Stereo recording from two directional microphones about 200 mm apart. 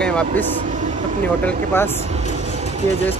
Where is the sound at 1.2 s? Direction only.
10° left (ahead or behind).